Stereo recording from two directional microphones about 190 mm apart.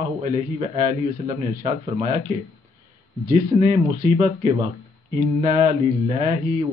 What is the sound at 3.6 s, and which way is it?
A man's voice, 35° right (ahead or behind).